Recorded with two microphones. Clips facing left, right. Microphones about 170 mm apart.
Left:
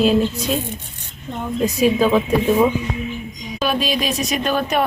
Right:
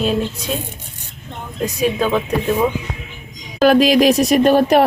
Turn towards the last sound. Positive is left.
turn(degrees=-60)  # may be behind; listen again after turning